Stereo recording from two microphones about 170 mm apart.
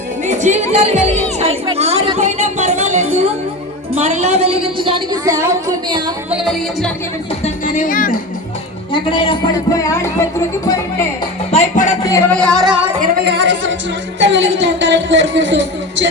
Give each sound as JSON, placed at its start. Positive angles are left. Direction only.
{"t": 0.3, "sound": "music", "side_deg": -45}
{"t": 1.6, "sound": "a woman's voice", "side_deg": -35}
{"t": 6.3, "sound": "music", "side_deg": 0}
{"t": 7.6, "sound": "speech", "side_deg": 55}
{"t": 8.9, "sound": "speech", "side_deg": 30}
{"t": 11.5, "sound": "speech", "side_deg": 45}
{"t": 12.0, "sound": "speech", "side_deg": 20}
{"t": 12.4, "sound": "music", "side_deg": 5}
{"t": 13.2, "sound": "speech", "side_deg": -90}